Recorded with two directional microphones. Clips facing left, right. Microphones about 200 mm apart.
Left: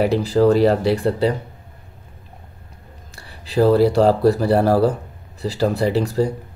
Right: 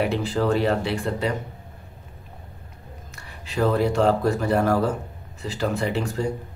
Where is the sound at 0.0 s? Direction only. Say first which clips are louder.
Left 7 dB; 40° left (ahead or behind).